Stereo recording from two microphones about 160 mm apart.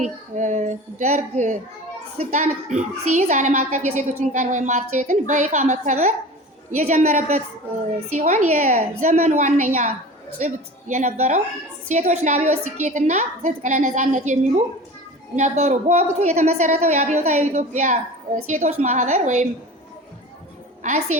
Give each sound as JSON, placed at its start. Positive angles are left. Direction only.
{"t": 0.0, "sound": "a child's voice", "side_deg": -50}
{"t": 15.4, "sound": "a child's voice", "side_deg": -45}
{"t": 20.8, "sound": "a child's voice", "side_deg": -50}